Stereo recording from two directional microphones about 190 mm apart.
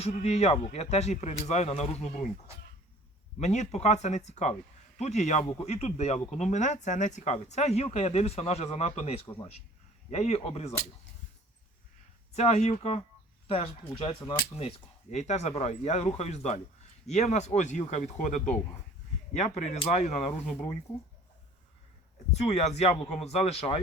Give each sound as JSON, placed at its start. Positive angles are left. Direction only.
{"t": 0.0, "sound": "speech", "side_deg": 35}
{"t": 3.4, "sound": "speech", "side_deg": 35}
{"t": 12.3, "sound": "speech", "side_deg": 35}
{"t": 19.5, "sound": "speech", "side_deg": 35}
{"t": 22.3, "sound": "speech", "side_deg": 35}